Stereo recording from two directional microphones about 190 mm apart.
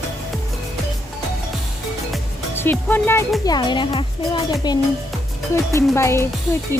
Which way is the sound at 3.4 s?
20° left (ahead or behind).